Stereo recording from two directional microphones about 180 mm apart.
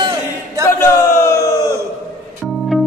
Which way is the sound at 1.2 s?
15° left (ahead or behind).